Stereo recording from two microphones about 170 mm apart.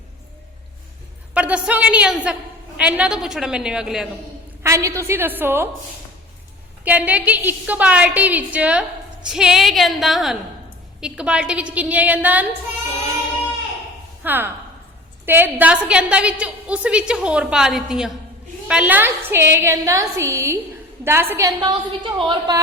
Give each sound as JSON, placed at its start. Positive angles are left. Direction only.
{"t": 1.3, "sound": "a woman's voice", "side_deg": -5}
{"t": 4.6, "sound": "a woman's voice", "side_deg": -15}
{"t": 6.8, "sound": "a woman's voice", "side_deg": -10}
{"t": 14.3, "sound": "a woman's voice", "side_deg": -10}
{"t": 21.6, "sound": "a woman's voice", "side_deg": -30}